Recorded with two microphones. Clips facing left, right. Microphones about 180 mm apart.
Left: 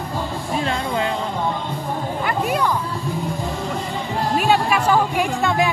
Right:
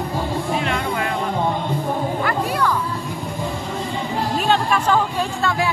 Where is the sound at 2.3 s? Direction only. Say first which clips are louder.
Left 4 dB; 20° left (ahead or behind).